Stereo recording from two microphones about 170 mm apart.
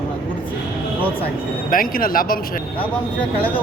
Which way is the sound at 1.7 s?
55° left (ahead or behind).